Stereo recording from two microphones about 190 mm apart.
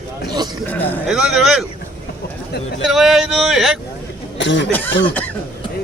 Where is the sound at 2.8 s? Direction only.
Centre (ahead or behind).